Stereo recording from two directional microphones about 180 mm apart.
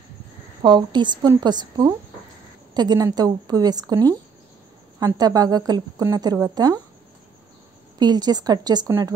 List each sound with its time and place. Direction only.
0.6 s a woman's voice: 25° right (ahead or behind)
5.0 s a woman's voice: 20° right (ahead or behind)
8.0 s a woman's voice: 20° right (ahead or behind)